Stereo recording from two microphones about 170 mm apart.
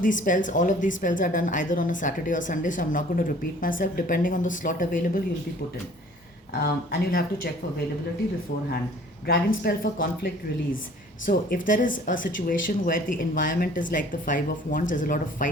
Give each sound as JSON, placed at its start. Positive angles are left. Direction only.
{"t": 0.0, "sound": "speech", "side_deg": 50}
{"t": 6.5, "sound": "speech", "side_deg": 60}
{"t": 9.2, "sound": "speech", "side_deg": 65}